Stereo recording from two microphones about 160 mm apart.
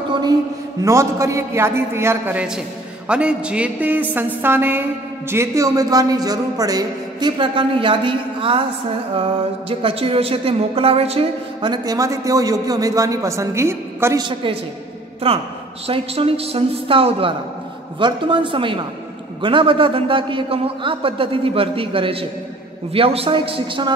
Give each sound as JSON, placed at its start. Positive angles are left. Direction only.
{"t": 0.8, "sound": "a woman's voice", "side_deg": -20}
{"t": 9.7, "sound": "a woman's voice", "side_deg": -35}
{"t": 14.2, "sound": "a man's voice", "side_deg": -35}